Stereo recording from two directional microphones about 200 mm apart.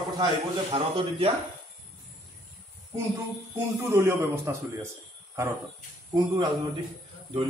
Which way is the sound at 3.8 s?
10° right (ahead or behind).